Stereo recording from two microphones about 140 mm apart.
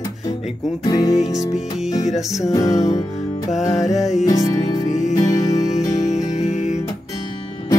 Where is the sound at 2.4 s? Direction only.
25° left (ahead or behind).